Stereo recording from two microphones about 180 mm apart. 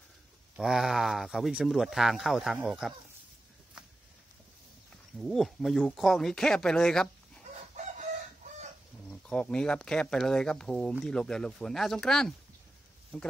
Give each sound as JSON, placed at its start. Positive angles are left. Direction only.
{"t": 0.6, "sound": "speech", "side_deg": 0}
{"t": 5.1, "sound": "speech", "side_deg": 0}
{"t": 7.8, "sound": "chicken", "side_deg": -40}
{"t": 9.1, "sound": "speech", "side_deg": 5}